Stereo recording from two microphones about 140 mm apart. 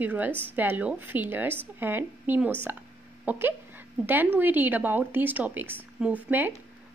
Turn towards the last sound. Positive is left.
turn(degrees=-10)  # may be behind; listen again after turning